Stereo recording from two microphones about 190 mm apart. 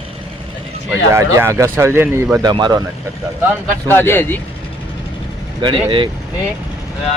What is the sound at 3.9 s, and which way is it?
Speech, 10° left (ahead or behind).